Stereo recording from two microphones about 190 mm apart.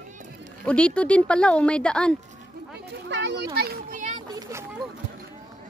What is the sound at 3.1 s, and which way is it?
Speech, 70° right (ahead or behind).